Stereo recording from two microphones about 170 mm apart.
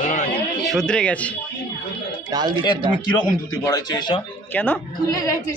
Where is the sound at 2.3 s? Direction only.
25° right (ahead or behind).